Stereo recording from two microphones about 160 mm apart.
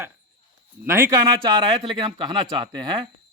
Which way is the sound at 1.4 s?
25° right (ahead or behind).